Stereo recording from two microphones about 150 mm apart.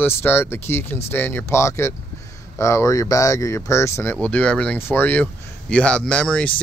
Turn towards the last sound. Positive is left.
turn(degrees=10)  # may be behind; listen again after turning